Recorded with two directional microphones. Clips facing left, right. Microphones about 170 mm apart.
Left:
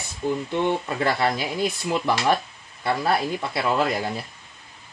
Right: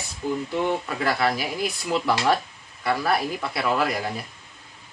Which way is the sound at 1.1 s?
20° left (ahead or behind).